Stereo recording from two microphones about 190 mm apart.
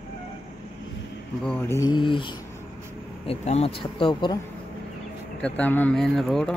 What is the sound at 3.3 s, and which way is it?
Speech, 35° left (ahead or behind).